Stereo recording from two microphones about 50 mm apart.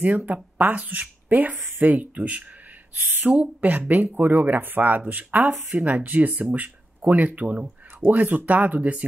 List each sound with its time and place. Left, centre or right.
0.0 s speech: right
8.1 s speech: right